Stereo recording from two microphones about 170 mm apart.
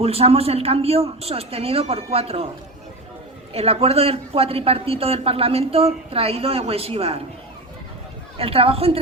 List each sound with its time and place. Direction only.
0.0 s a woman's voice: 35° right (ahead or behind)
3.5 s a woman's voice: 35° right (ahead or behind)
8.4 s a woman's voice: 35° right (ahead or behind)